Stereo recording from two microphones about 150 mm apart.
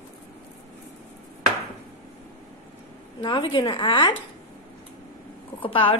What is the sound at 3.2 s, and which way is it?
Speech, 30° left (ahead or behind).